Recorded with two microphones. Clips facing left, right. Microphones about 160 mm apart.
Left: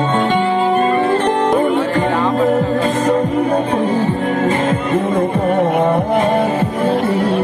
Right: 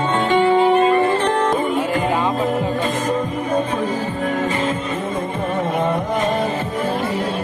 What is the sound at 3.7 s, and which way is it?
Music, 55° left (ahead or behind).